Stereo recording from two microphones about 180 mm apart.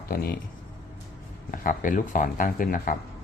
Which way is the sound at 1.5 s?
50° left (ahead or behind).